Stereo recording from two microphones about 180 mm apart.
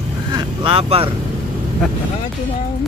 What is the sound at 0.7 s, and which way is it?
Speech, 30° right (ahead or behind).